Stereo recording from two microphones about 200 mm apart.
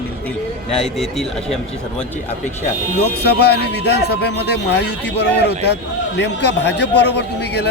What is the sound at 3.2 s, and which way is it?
A man's voice, 55° left (ahead or behind).